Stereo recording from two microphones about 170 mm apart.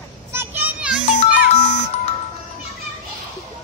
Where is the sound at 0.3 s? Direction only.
10° right (ahead or behind).